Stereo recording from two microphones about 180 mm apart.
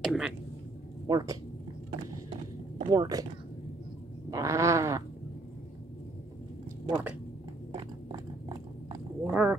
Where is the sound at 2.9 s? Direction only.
20° right (ahead or behind).